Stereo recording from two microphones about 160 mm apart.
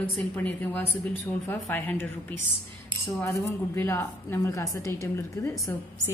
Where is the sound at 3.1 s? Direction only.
15° left (ahead or behind).